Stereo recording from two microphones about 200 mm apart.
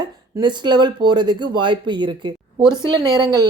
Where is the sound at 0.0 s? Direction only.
20° right (ahead or behind).